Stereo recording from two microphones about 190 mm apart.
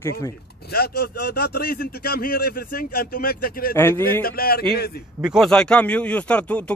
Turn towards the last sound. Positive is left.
turn(degrees=5)  # may be behind; listen again after turning